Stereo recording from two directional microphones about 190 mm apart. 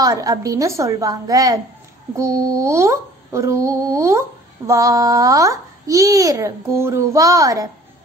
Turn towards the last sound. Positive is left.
turn(degrees=-15)  # may be behind; listen again after turning